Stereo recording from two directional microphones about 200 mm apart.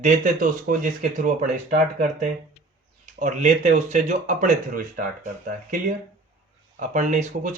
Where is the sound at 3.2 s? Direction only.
40° right (ahead or behind).